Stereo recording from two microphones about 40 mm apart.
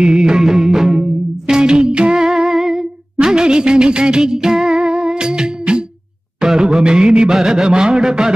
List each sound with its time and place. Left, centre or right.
0.0 s music: centre
2.1 s music: centre
6.4 s music: centre